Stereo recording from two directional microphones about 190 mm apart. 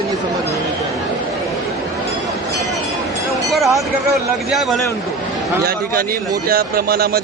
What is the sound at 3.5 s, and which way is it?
Speech, centre (ahead or behind).